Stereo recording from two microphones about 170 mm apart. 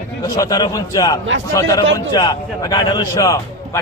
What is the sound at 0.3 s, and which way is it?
A man's voice, 20° left (ahead or behind).